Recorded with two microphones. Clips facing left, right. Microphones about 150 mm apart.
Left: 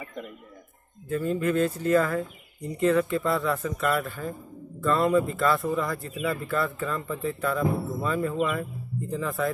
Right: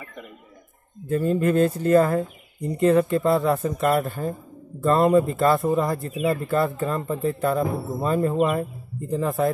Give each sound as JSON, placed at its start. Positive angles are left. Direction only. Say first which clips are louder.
{"t": 1.0, "sound": "speech", "louder": "right 5 dB", "side_deg": -35}